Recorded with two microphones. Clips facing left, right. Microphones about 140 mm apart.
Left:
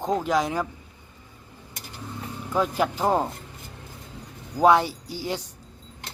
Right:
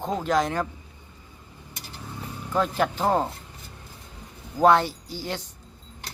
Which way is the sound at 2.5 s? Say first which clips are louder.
Even; 10° left (ahead or behind).